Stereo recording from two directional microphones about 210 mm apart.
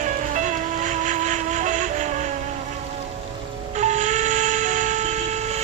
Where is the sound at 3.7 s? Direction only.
35° right (ahead or behind).